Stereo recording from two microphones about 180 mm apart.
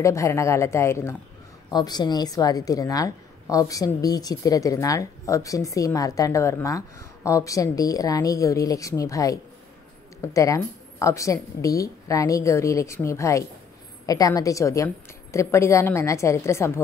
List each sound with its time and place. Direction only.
0.0 s a woman's voice: 15° left (ahead or behind)